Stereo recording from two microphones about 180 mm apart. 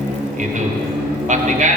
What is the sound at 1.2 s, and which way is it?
Speech, 40° right (ahead or behind).